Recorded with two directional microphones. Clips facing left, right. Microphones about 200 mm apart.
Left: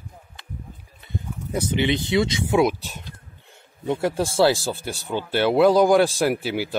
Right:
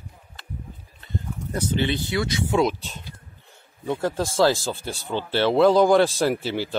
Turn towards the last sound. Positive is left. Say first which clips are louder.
# left 1 dB
turn(degrees=10)  # may be behind; listen again after turning